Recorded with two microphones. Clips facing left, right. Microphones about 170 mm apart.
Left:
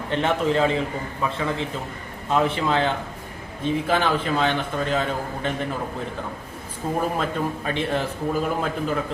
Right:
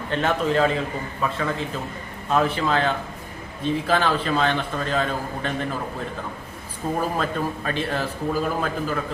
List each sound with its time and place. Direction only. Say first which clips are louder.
0.1 s a man's voice: even; 20° left (ahead or behind)
7.2 s a man's voice: even; 20° left (ahead or behind)